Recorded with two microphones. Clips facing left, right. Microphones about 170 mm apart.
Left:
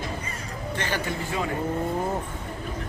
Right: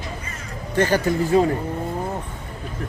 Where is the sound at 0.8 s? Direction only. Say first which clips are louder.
Right 12 dB; 40° right (ahead or behind).